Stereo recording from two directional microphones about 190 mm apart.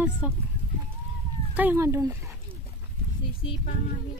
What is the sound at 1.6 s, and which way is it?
Speech, 10° right (ahead or behind).